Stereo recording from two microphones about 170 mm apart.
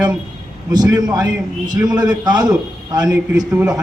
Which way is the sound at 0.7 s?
20° right (ahead or behind).